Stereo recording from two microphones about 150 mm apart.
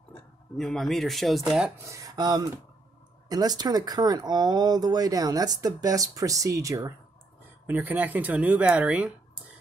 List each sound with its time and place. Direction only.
0.6 s speech: 5° left (ahead or behind)
1.8 s speech: 20° right (ahead or behind)